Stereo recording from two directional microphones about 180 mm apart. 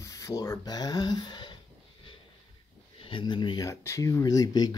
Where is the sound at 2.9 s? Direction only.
30° left (ahead or behind).